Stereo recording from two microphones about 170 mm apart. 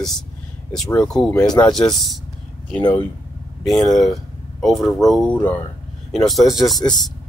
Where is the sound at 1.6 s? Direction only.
20° left (ahead or behind).